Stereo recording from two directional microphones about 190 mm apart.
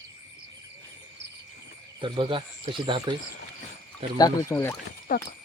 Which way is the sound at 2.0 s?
25° right (ahead or behind).